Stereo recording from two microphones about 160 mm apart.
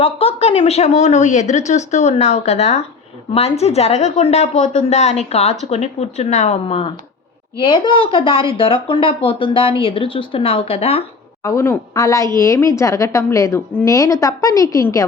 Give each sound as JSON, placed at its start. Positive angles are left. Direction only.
{"t": 0.0, "sound": "a woman's voice", "side_deg": 40}
{"t": 11.4, "sound": "a woman's voice", "side_deg": 20}